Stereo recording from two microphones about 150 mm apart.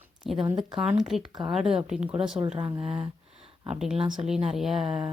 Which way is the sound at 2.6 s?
35° right (ahead or behind).